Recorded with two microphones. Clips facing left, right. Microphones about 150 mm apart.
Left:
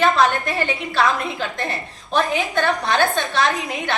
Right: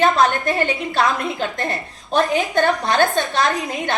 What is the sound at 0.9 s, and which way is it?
A woman's voice, 50° right (ahead or behind).